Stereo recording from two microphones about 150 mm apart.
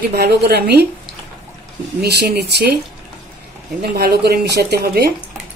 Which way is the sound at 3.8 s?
90° right.